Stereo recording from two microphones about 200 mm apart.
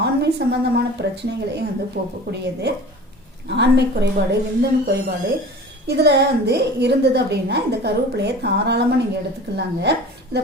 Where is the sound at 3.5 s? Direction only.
60° right (ahead or behind).